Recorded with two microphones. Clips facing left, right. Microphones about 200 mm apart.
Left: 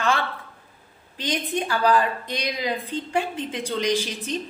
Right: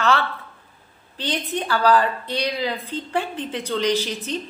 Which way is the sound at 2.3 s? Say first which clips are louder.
Right 4 dB; 35° right (ahead or behind).